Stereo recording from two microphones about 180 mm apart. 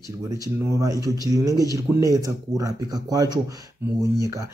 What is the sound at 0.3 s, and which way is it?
Speech, 20° right (ahead or behind).